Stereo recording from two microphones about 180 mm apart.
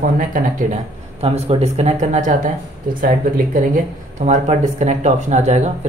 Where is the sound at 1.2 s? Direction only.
35° right (ahead or behind).